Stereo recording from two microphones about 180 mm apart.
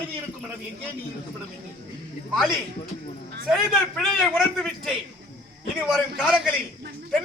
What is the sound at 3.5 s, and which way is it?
A man's voice, centre (ahead or behind).